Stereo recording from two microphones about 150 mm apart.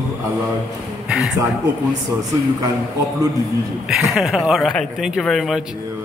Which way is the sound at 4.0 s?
Centre (ahead or behind).